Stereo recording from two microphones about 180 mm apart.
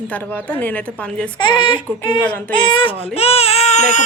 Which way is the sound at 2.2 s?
10° left (ahead or behind).